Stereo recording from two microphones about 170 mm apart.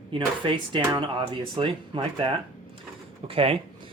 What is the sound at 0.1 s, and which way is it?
Speech, 30° right (ahead or behind).